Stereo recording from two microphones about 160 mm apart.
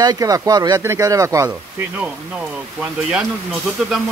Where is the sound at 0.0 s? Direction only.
25° right (ahead or behind).